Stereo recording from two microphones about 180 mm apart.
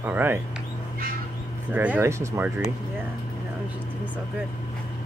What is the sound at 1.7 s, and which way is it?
Speech, 10° right (ahead or behind).